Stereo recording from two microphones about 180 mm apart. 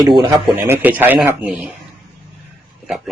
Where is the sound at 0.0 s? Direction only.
20° right (ahead or behind).